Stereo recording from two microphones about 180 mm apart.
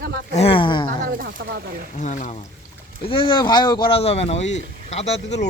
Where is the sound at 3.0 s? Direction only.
30° left (ahead or behind).